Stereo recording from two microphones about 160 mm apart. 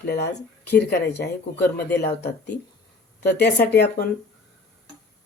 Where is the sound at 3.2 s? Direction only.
85° left.